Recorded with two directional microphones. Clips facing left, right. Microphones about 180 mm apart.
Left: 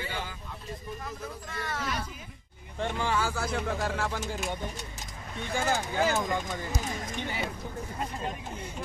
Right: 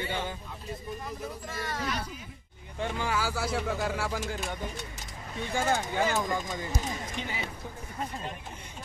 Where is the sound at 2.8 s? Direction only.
Centre (ahead or behind).